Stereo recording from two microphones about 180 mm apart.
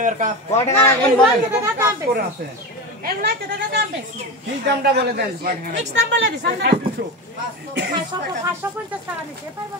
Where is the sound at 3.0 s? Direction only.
60° right (ahead or behind).